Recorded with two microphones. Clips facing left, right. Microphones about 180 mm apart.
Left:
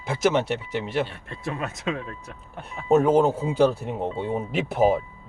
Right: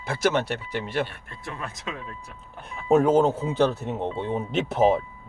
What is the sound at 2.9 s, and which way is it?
Speech, 5° left (ahead or behind).